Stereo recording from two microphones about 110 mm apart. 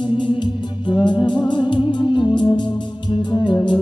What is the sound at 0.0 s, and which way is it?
Music, 50° left (ahead or behind).